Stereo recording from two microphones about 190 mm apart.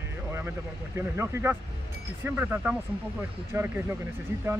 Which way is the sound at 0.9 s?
15° right (ahead or behind).